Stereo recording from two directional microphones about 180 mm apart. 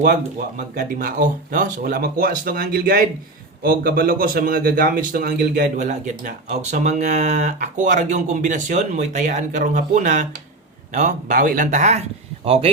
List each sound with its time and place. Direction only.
0.8 s a man's voice: 50° right (ahead or behind)